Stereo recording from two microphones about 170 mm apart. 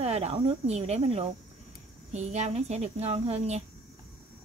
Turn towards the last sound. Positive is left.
turn(degrees=-40)  # may be behind; listen again after turning